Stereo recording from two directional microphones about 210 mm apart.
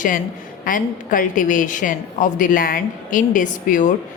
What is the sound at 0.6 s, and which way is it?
A woman's voice, 40° left (ahead or behind).